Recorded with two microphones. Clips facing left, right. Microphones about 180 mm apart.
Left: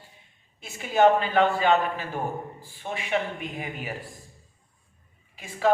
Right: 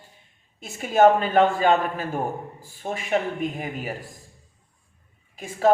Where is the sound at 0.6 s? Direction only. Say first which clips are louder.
Right 3 dB; 45° right (ahead or behind).